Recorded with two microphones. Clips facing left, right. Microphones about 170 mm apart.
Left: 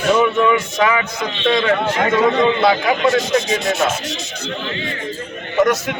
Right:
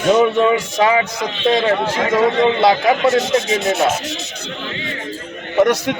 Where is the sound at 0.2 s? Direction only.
35° right (ahead or behind).